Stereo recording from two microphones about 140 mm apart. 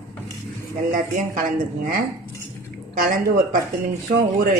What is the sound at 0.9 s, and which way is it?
Speech, 85° right.